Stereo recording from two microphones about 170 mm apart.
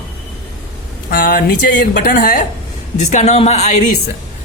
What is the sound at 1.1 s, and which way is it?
A woman's voice, 60° left (ahead or behind).